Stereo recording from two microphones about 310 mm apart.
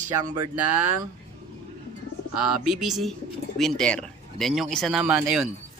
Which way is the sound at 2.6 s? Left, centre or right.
Centre.